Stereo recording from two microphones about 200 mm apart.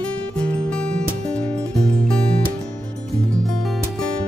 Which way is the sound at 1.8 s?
5° left (ahead or behind).